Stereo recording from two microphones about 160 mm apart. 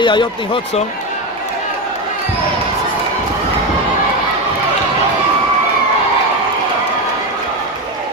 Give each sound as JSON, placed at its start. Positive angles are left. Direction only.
{"t": 0.0, "sound": "speech", "side_deg": 30}